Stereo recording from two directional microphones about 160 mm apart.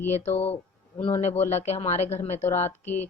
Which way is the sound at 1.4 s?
45° left (ahead or behind).